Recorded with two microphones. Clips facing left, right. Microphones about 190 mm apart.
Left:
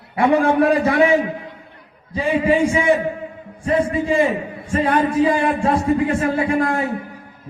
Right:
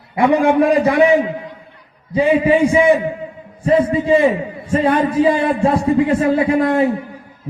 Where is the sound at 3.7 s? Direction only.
25° right (ahead or behind).